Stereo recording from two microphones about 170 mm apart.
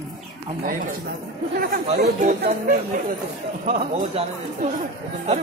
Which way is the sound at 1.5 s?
60° right (ahead or behind).